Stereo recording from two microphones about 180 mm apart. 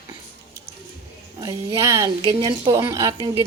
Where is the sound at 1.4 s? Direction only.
15° right (ahead or behind).